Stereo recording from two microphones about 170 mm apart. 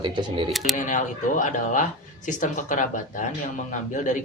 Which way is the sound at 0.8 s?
50° left (ahead or behind).